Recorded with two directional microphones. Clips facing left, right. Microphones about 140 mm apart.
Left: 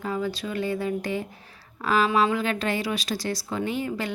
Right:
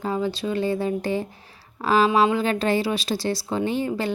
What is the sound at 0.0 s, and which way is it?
A woman's voice, 25° right (ahead or behind).